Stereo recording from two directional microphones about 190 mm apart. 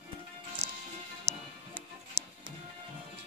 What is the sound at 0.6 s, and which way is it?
Music, 30° right (ahead or behind).